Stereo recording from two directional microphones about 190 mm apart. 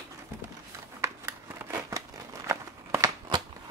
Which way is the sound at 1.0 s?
15° right (ahead or behind).